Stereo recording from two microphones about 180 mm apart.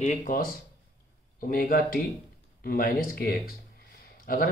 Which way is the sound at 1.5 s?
50° left (ahead or behind).